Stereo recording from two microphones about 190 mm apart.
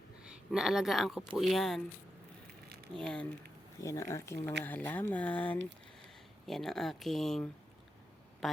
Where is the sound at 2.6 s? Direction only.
60° right (ahead or behind).